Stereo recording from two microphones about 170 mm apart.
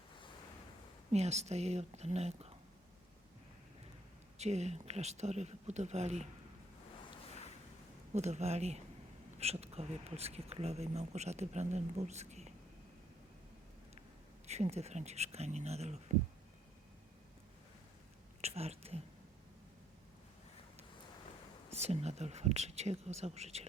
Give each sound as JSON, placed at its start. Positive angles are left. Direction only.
{"t": 1.1, "sound": "speech", "side_deg": -40}
{"t": 4.4, "sound": "speech", "side_deg": -40}
{"t": 8.1, "sound": "speech", "side_deg": -40}
{"t": 14.4, "sound": "speech", "side_deg": -40}
{"t": 18.4, "sound": "speech", "side_deg": -40}
{"t": 21.7, "sound": "speech", "side_deg": -40}